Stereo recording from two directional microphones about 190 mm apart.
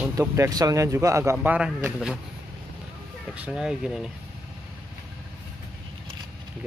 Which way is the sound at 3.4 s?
5° right (ahead or behind).